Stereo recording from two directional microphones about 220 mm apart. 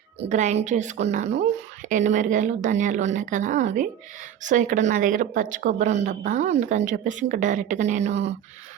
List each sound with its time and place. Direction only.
0.2 s speech: 35° right (ahead or behind)